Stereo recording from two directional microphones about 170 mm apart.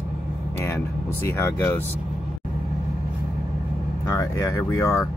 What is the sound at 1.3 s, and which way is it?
Speech, 15° left (ahead or behind).